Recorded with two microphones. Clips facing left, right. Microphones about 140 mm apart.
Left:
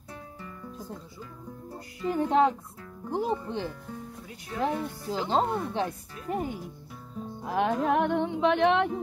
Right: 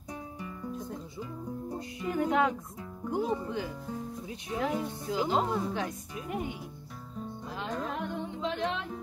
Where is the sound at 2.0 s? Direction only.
30° left (ahead or behind).